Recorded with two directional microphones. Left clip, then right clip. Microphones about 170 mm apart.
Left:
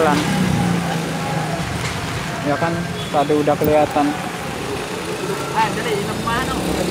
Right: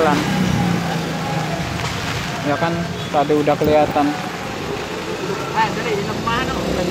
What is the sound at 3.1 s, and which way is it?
Speech, 25° right (ahead or behind).